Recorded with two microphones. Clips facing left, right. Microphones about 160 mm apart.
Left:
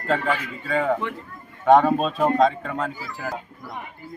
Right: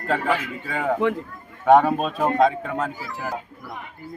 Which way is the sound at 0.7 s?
10° right (ahead or behind).